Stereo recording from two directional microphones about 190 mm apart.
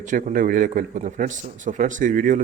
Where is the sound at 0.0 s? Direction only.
40° right (ahead or behind).